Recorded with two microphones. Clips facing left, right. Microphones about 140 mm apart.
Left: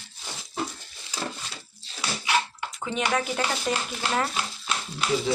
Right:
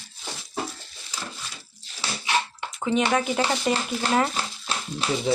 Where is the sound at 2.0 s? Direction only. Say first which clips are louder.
Even; 25° right (ahead or behind).